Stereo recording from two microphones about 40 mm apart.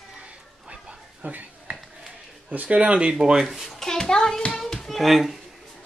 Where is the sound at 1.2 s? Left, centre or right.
Right.